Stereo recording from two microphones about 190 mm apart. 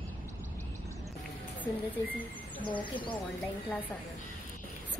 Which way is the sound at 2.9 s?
25° left (ahead or behind).